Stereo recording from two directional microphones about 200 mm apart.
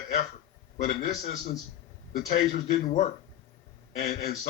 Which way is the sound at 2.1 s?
45° left (ahead or behind).